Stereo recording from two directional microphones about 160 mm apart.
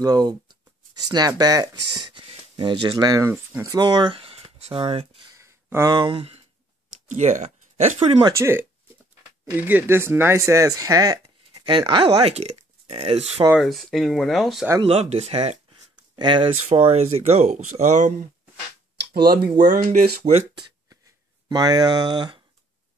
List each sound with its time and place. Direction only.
0.0 s speech: 25° right (ahead or behind)
5.3 s a sound: 20° right (ahead or behind); by 6.4 s 35° right (ahead or behind)
7.1 s speech: 50° right (ahead or behind)
8.2 s speech: 20° right (ahead or behind); by 13.3 s 40° right (ahead or behind)
13.6 s speech: centre (ahead or behind)
14.8 s speech: 40° right (ahead or behind)
16.6 s speech: 40° right (ahead or behind)
18.9 s speech: 80° right; by 20.4 s 45° right (ahead or behind)
21.5 s speech: 25° right (ahead or behind)